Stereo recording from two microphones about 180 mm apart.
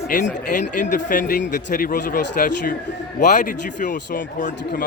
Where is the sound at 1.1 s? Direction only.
50° left (ahead or behind).